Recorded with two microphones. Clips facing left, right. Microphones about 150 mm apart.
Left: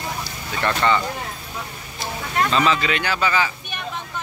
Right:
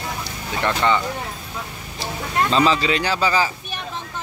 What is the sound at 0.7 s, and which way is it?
Speech, 15° right (ahead or behind).